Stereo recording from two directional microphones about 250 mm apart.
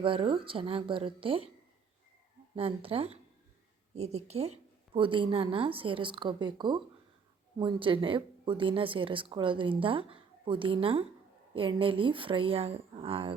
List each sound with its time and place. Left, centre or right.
0.0 s speech: centre
2.6 s speech: right